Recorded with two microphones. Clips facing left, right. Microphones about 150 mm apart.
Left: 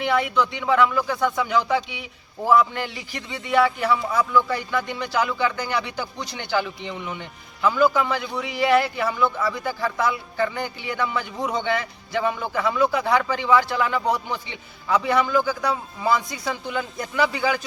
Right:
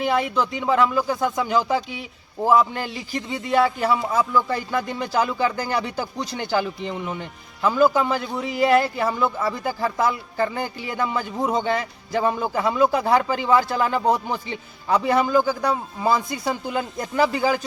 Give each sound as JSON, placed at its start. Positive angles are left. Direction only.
{"t": 0.0, "sound": "a man's voice", "side_deg": -35}